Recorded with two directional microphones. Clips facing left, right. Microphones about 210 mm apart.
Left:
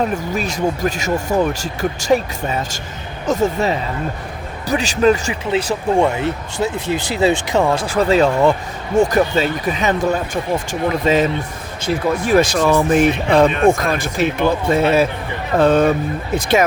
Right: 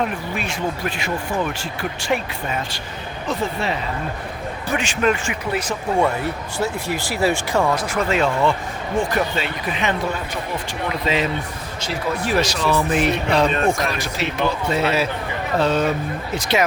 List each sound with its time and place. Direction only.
0.0 s speech: 40° left (ahead or behind)
6.0 s speech: 20° left (ahead or behind); by 16.6 s 50° left (ahead or behind)